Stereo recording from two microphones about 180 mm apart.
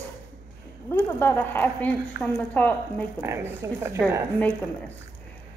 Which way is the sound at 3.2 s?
15° right (ahead or behind).